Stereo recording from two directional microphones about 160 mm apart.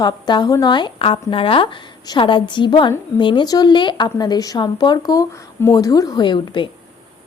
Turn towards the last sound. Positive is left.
turn(degrees=30)  # may be behind; listen again after turning